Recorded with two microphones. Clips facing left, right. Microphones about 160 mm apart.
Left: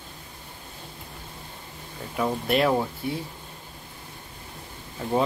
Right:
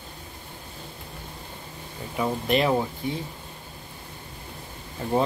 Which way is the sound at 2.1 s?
Centre (ahead or behind).